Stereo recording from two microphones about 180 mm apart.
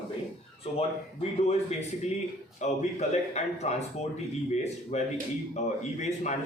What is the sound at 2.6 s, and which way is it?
A man's voice, 40° left (ahead or behind).